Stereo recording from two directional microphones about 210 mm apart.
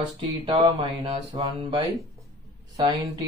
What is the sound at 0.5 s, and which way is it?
Speech, 25° right (ahead or behind).